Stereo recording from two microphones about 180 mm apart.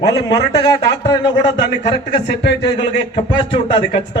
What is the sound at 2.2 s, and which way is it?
Speech, 70° left (ahead or behind).